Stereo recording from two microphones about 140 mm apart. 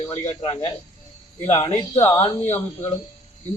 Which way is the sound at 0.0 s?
25° left (ahead or behind).